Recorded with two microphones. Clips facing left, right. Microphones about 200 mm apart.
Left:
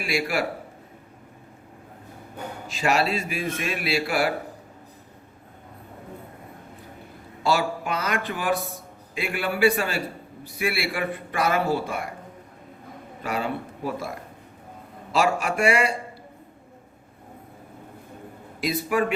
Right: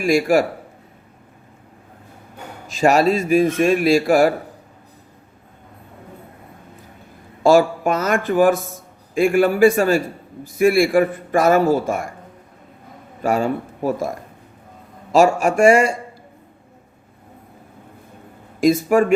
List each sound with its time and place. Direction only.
0.0 s a man's voice: 45° right (ahead or behind)
2.6 s a man's voice: 45° right (ahead or behind)
7.4 s a man's voice: 45° right (ahead or behind)
13.2 s a man's voice: 45° right (ahead or behind)
18.6 s a man's voice: 45° right (ahead or behind)